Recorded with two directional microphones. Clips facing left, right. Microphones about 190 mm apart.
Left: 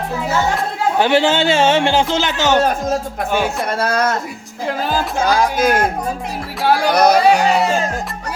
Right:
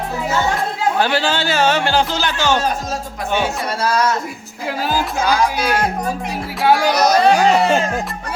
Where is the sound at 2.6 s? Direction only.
55° left (ahead or behind).